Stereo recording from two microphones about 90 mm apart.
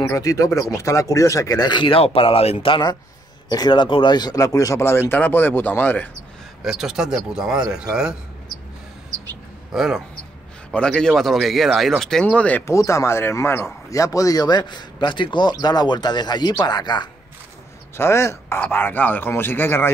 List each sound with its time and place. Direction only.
0.1 s speech: 40° left (ahead or behind)
1.7 s speech: 70° left (ahead or behind); by 2.8 s 90° left
3.4 s speech: 50° left (ahead or behind); by 6.0 s 20° left (ahead or behind)
6.6 s speech: 5° right (ahead or behind)
9.7 s speech: 5° right (ahead or behind)
10.7 s speech: 10° left (ahead or behind)
12.6 s speech: 35° left (ahead or behind); by 17.1 s 55° left (ahead or behind)
17.9 s speech: 30° left (ahead or behind)
18.6 s speech: 20° left (ahead or behind)